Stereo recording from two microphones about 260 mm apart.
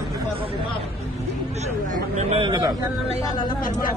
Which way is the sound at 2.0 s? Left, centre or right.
Right.